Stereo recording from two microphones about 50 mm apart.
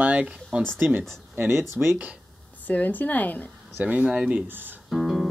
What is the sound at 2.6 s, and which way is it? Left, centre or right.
Speech, left.